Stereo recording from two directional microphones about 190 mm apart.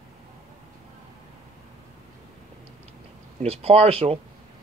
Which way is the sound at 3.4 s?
30° right (ahead or behind).